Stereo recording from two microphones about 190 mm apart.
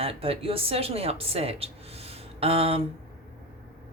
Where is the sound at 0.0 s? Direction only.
30° right (ahead or behind).